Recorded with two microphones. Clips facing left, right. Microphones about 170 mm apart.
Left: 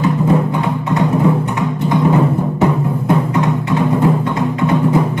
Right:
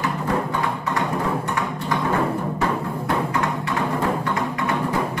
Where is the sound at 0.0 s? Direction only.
20° left (ahead or behind).